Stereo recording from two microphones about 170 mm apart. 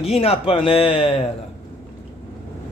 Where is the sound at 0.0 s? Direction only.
35° left (ahead or behind).